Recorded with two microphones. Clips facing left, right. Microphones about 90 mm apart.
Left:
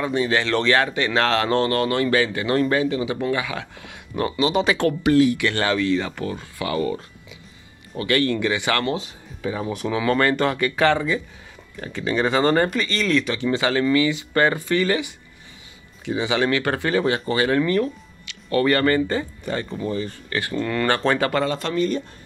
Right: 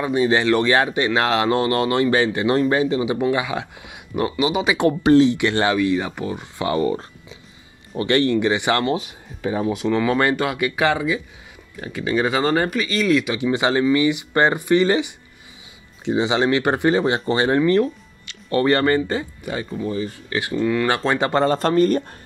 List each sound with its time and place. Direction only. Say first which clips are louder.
0.0 s speech: right 3 dB; 20° right (ahead or behind)
5.0 s speech: right 3 dB; 25° right (ahead or behind)
9.6 s speech: right 5 dB; centre (ahead or behind)
10.1 s speech: even; 15° right (ahead or behind)
21.3 s speech: right 5 dB; 35° right (ahead or behind)